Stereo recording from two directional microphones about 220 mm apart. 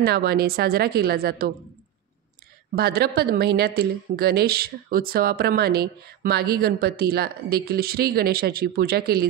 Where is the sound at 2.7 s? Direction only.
45° right (ahead or behind).